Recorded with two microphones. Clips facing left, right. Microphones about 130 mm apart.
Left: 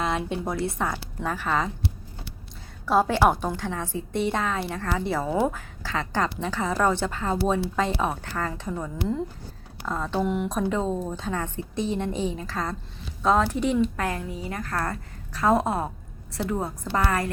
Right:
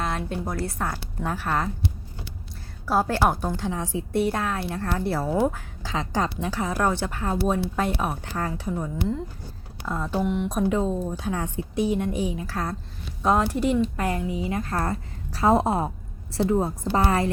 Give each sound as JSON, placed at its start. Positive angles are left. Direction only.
{"t": 0.0, "sound": "a woman's voice", "side_deg": 0}
{"t": 2.8, "sound": "a woman's voice", "side_deg": -5}
{"t": 5.8, "sound": "a woman's voice", "side_deg": -15}
{"t": 10.5, "sound": "a woman's voice", "side_deg": -10}
{"t": 14.5, "sound": "a woman's voice", "side_deg": -25}